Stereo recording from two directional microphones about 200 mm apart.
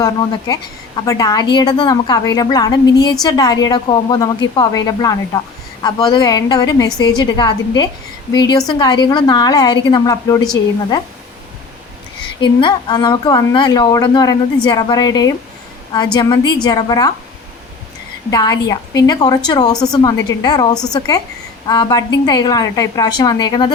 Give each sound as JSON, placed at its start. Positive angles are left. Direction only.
{"t": 0.0, "sound": "a woman's voice", "side_deg": 20}
{"t": 12.4, "sound": "a woman's voice", "side_deg": 25}
{"t": 18.3, "sound": "a woman's voice", "side_deg": 20}